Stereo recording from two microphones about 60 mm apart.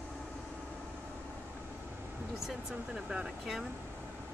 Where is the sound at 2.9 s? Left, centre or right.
Centre.